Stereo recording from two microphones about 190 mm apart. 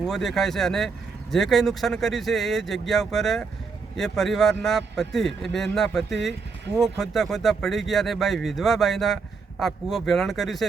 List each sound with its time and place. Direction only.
0.0 s speech: centre (ahead or behind)